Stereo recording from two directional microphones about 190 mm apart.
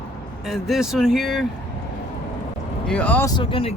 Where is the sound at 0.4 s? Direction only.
Centre (ahead or behind).